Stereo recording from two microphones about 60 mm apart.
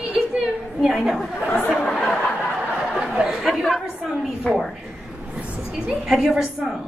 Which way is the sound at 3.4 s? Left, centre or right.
Centre.